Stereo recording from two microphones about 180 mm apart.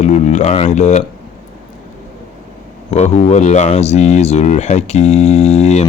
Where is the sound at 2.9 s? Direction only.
40° left (ahead or behind).